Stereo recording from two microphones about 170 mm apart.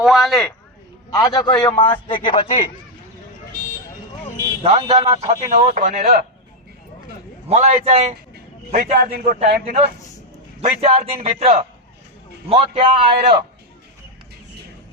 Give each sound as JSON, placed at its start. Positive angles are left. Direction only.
{"t": 0.0, "sound": "speech", "side_deg": 0}
{"t": 1.1, "sound": "a man's voice", "side_deg": 20}
{"t": 4.6, "sound": "a man's voice", "side_deg": -35}
{"t": 5.3, "sound": "speech", "side_deg": -45}
{"t": 7.5, "sound": "a man's voice", "side_deg": -40}
{"t": 8.7, "sound": "a man's voice", "side_deg": -55}
{"t": 10.6, "sound": "a man's voice", "side_deg": -35}